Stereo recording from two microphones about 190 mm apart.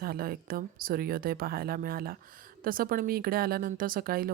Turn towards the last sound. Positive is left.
turn(degrees=-50)  # may be behind; listen again after turning